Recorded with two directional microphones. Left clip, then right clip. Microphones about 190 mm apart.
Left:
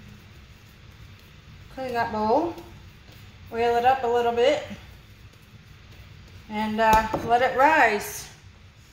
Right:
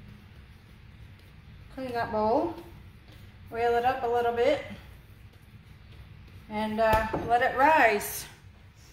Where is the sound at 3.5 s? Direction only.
15° right (ahead or behind).